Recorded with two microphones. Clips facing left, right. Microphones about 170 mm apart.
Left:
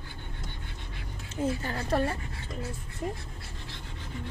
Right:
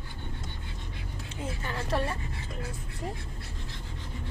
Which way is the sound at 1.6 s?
35° left (ahead or behind).